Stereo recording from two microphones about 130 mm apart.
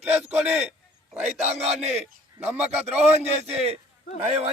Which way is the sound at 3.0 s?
55° right (ahead or behind).